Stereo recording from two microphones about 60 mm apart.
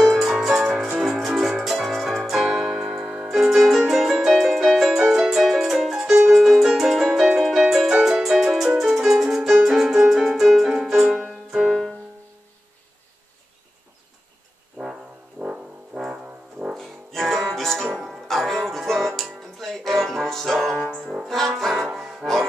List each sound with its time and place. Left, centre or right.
0.2 s music: centre
7.9 s music: centre
14.8 s music: right
15.4 s music: centre
16.7 s music: centre
20.7 s brass instrument: centre
21.1 s brass instrument: centre
22.2 s music: centre